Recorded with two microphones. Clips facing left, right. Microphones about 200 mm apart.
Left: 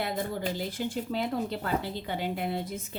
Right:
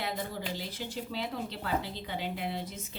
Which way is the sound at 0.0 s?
50° left (ahead or behind).